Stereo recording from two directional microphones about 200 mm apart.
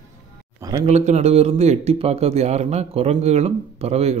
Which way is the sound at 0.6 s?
20° right (ahead or behind).